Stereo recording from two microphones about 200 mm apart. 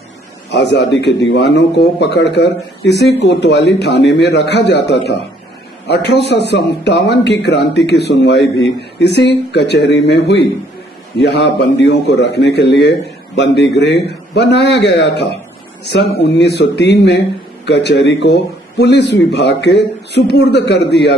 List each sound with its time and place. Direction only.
0.5 s speech: 55° left (ahead or behind)